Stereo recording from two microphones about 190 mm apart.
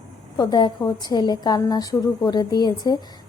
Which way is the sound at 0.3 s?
20° left (ahead or behind).